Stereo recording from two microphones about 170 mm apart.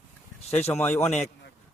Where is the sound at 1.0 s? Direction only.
40° left (ahead or behind).